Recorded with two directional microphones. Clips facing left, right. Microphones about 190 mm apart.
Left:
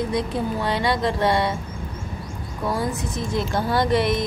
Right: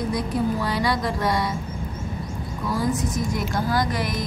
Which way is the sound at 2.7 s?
25° left (ahead or behind).